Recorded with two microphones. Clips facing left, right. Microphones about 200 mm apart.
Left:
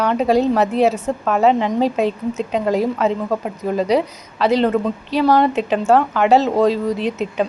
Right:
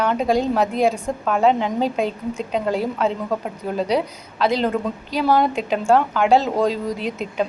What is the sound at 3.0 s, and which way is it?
Speech, 5° left (ahead or behind).